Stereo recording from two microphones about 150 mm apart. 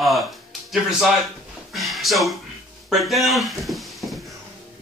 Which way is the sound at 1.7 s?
Centre (ahead or behind).